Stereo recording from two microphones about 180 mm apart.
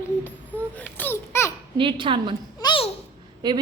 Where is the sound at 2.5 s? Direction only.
25° left (ahead or behind).